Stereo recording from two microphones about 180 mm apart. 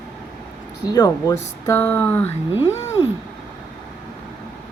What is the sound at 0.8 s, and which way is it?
Speech, 20° left (ahead or behind).